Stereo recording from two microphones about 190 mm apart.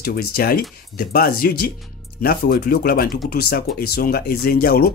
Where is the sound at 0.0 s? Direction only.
55° left (ahead or behind).